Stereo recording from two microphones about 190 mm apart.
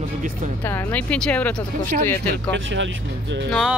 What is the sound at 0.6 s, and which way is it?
Speech, 10° left (ahead or behind).